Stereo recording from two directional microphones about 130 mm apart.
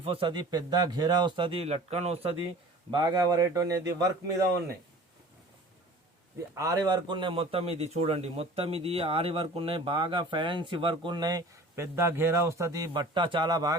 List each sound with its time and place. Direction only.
0.0 s a man's voice: 45° right (ahead or behind)
2.9 s a man's voice: 30° right (ahead or behind)
6.5 s a man's voice: 25° right (ahead or behind)